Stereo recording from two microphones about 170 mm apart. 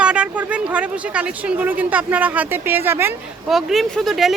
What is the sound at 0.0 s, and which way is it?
Speech, 5° right (ahead or behind).